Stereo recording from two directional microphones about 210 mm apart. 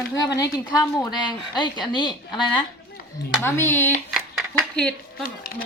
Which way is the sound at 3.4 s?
10° left (ahead or behind).